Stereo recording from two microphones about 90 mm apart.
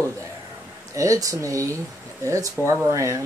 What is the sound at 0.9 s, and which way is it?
Speech, 40° right (ahead or behind).